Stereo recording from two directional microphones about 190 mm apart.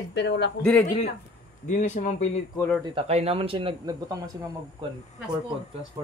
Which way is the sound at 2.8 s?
30° right (ahead or behind).